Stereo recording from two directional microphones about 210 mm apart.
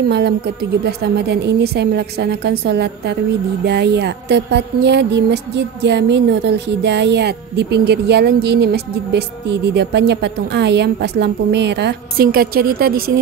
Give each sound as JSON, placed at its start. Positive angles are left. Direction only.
{"t": 0.8, "sound": "a woman's voice", "side_deg": -50}